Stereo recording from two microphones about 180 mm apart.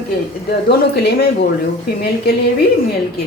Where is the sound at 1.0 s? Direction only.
60° left (ahead or behind).